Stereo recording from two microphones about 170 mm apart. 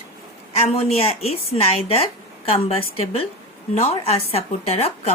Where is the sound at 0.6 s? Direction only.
35° left (ahead or behind).